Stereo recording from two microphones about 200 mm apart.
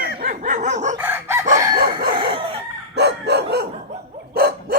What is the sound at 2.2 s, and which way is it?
Chicken, 25° right (ahead or behind).